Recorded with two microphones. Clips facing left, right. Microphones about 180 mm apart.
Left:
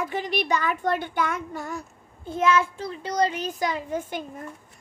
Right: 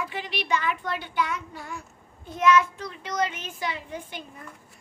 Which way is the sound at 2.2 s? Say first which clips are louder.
Right 1 dB; 30° left (ahead or behind).